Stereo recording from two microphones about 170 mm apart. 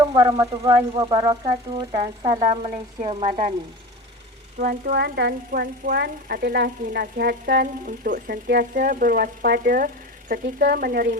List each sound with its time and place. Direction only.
0.0 s speech: 25° right (ahead or behind)
4.5 s a woman's voice: 60° right (ahead or behind)
5.5 s a woman's voice: 60° right (ahead or behind)